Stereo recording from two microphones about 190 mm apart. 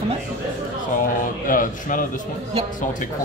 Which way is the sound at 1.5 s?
45° left (ahead or behind).